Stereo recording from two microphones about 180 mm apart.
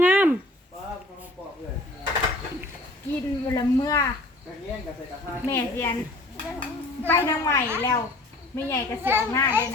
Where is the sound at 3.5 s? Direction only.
20° left (ahead or behind).